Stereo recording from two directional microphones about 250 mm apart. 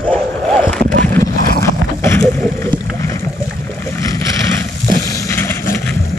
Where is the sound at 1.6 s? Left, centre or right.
Centre.